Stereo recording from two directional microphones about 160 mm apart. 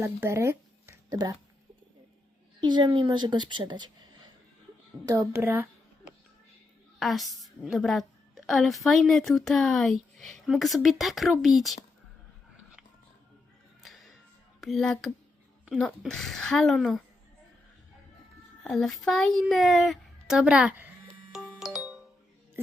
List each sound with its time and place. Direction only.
0.0 s speech: 15° right (ahead or behind)
2.6 s a woman's voice: 30° right (ahead or behind)
5.0 s a child's voice: 20° right (ahead or behind)
7.0 s a woman's voice: centre (ahead or behind)
13.8 s music: centre (ahead or behind)
14.6 s a woman's voice: centre (ahead or behind)
18.6 s a woman's voice: 5° left (ahead or behind)
21.3 s music: centre (ahead or behind)